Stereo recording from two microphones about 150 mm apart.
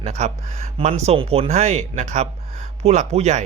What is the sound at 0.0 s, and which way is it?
Speech, 50° right (ahead or behind).